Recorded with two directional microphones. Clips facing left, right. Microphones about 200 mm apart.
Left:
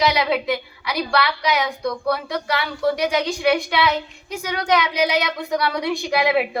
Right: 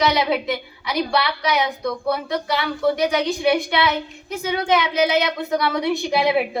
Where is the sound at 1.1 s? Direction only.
20° right (ahead or behind).